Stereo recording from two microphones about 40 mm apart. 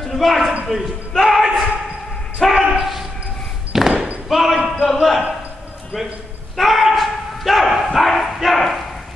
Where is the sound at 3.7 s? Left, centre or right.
Centre.